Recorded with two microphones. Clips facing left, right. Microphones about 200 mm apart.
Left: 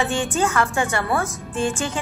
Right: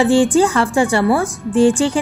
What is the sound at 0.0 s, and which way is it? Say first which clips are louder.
A woman's voice: right 10 dB; 30° right (ahead or behind).